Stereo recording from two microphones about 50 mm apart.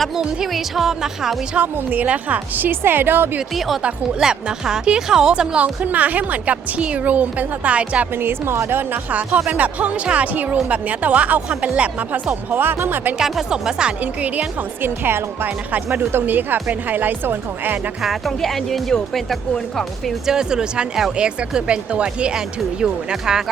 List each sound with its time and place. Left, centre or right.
0.2 s speech: centre
1.6 s a woman's voice: right
2.6 s speech: right
4.2 s speech: centre
5.6 s a woman's voice: right
8.1 s a woman's voice: right
13.1 s speech: centre
14.0 s a woman's voice: right
14.8 s a woman's voice: right
18.0 s speech: centre
20.2 s speech: centre